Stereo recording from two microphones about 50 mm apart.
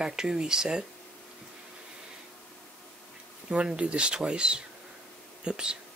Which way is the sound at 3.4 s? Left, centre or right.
Right.